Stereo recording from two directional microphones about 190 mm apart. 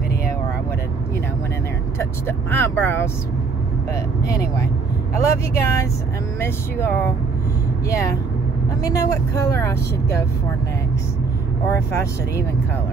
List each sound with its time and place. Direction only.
2.0 s speech: 10° left (ahead or behind)
11.9 s speech: 15° left (ahead or behind)